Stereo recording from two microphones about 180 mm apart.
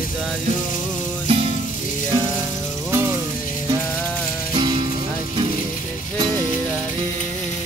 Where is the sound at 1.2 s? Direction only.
30° right (ahead or behind).